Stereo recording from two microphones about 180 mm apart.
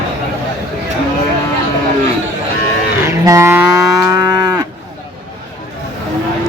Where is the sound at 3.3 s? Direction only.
15° right (ahead or behind).